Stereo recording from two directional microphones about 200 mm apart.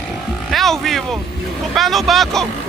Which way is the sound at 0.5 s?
Centre (ahead or behind).